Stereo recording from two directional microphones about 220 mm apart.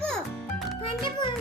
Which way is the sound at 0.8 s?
20° left (ahead or behind).